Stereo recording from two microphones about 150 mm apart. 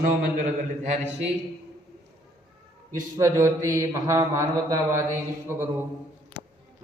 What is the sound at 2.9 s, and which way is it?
Speech, 20° right (ahead or behind).